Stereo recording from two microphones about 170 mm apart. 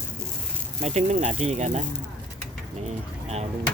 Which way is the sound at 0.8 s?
40° right (ahead or behind).